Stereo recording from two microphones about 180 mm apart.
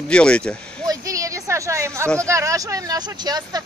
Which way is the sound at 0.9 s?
20° right (ahead or behind).